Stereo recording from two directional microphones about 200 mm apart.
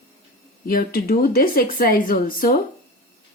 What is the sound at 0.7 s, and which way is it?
Speech, 45° left (ahead or behind).